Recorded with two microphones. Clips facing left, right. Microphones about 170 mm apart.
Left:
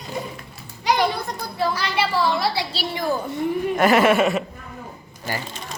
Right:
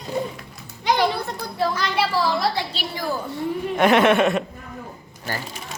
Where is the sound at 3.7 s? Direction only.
Centre (ahead or behind).